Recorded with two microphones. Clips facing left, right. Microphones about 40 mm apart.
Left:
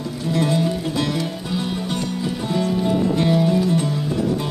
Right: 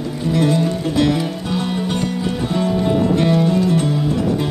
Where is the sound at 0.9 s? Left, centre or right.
Right.